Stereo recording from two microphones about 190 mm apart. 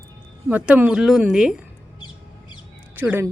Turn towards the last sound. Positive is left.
turn(degrees=-10)  # may be behind; listen again after turning